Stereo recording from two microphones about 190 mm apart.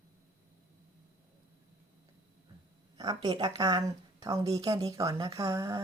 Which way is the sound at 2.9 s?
20° right (ahead or behind).